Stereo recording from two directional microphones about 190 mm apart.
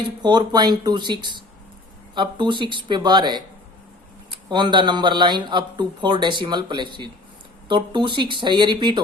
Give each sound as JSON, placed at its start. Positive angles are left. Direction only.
{"t": 0.2, "sound": "speech", "side_deg": -25}